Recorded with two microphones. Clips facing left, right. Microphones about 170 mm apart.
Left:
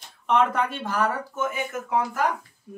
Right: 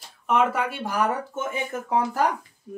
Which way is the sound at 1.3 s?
30° right (ahead or behind).